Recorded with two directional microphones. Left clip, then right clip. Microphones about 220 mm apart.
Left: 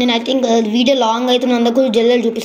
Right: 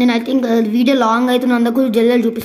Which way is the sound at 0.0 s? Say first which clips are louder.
Left 1 dB; 25° right (ahead or behind).